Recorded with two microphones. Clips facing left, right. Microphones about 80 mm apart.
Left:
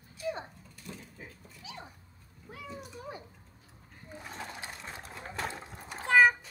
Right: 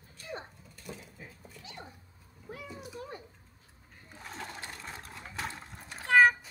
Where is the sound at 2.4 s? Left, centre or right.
Centre.